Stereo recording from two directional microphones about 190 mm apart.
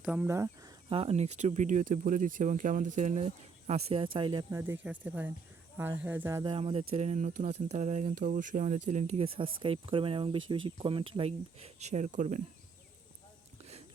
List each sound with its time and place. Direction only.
0.0 s speech: 10° right (ahead or behind)
0.9 s speech: 30° right (ahead or behind)
4.6 s speech: 10° right (ahead or behind)
6.4 s speech: 25° right (ahead or behind)